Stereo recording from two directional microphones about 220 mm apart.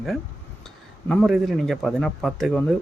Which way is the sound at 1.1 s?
Centre (ahead or behind).